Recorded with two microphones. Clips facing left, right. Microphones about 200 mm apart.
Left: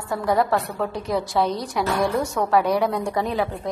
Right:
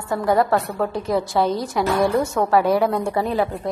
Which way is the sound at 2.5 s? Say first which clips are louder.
Right 2 dB; centre (ahead or behind).